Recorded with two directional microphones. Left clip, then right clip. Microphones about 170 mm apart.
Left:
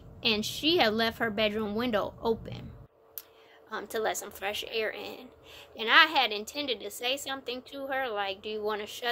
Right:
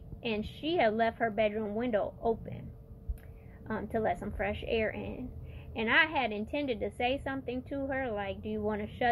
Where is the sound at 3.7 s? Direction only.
25° left (ahead or behind).